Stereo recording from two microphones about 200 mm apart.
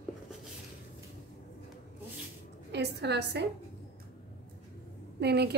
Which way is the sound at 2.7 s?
55° right (ahead or behind).